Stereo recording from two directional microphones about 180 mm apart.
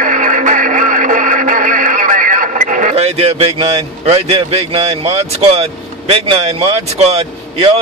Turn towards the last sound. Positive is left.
turn(degrees=-35)  # may be behind; listen again after turning